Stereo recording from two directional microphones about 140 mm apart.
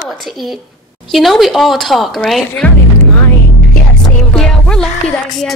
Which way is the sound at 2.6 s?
10° left (ahead or behind).